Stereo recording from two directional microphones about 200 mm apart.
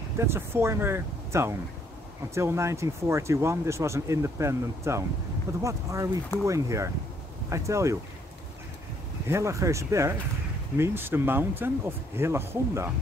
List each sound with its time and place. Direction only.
0.2 s speech: 10° right (ahead or behind)
9.3 s speech: 15° right (ahead or behind)